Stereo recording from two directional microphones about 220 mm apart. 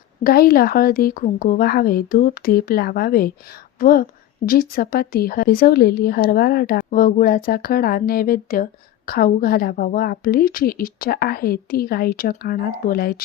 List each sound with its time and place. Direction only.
0.2 s a woman's voice: 45° left (ahead or behind)